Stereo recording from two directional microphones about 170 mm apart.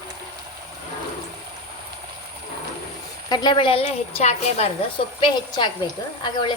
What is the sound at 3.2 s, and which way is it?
A woman's voice, 25° left (ahead or behind).